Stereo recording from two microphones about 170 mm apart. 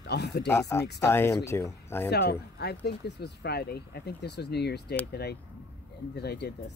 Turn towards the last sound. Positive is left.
turn(degrees=75)  # may be behind; listen again after turning